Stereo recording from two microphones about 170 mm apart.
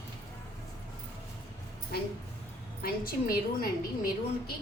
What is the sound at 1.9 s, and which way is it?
A woman's voice, 65° left (ahead or behind).